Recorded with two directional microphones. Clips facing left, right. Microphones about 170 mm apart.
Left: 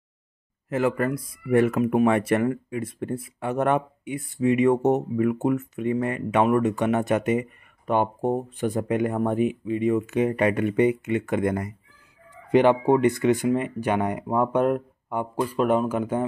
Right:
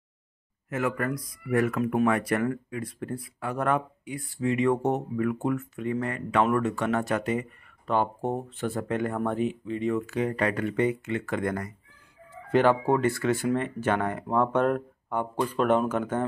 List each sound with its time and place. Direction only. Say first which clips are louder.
0.7 s speech: left 5 dB; 30° left (ahead or behind); by 16.3 s 10° left (ahead or behind)